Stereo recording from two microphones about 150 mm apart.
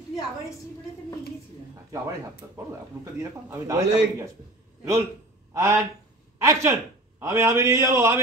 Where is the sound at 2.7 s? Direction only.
20° right (ahead or behind).